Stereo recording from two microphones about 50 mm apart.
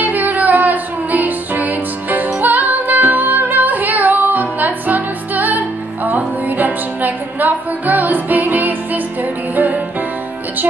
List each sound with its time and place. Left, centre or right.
0.0 s music: right